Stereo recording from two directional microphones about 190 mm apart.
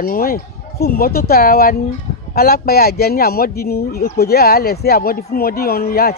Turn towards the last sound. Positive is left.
turn(degrees=55)  # may be behind; listen again after turning